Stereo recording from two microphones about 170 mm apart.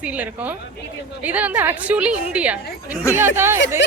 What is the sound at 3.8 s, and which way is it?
Speech, 90° left.